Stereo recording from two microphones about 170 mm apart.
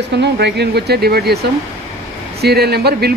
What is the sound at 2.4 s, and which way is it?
Speech, 70° right (ahead or behind).